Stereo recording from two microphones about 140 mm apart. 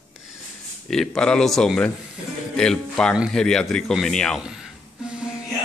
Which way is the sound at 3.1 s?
5° right (ahead or behind).